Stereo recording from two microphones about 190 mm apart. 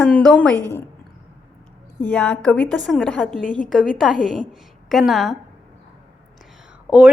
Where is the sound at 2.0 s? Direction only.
5° left (ahead or behind).